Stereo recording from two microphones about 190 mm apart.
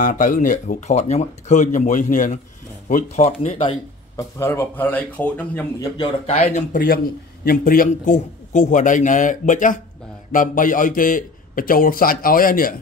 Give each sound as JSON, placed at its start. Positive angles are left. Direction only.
{"t": 0.0, "sound": "speech", "side_deg": 45}
{"t": 4.2, "sound": "a man's voice", "side_deg": 15}
{"t": 5.9, "sound": "a man's voice", "side_deg": 30}